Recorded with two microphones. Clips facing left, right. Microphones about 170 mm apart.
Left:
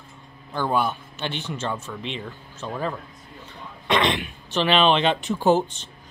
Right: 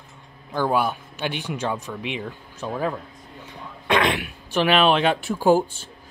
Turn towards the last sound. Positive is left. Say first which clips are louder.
# right 1 dB
turn(degrees=-10)  # may be behind; listen again after turning